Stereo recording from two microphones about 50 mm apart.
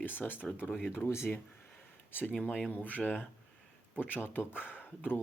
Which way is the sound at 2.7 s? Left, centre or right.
Left.